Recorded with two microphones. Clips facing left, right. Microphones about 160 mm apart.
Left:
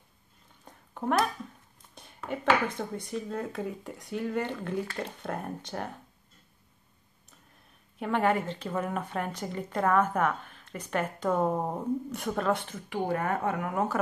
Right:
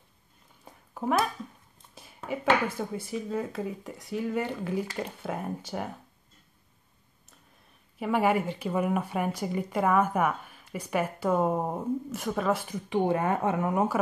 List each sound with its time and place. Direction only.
0.7 s a sound: 5° right (ahead or behind)
2.2 s speech: 5° right (ahead or behind)
8.0 s speech: 10° right (ahead or behind)
12.9 s speech: 20° right (ahead or behind)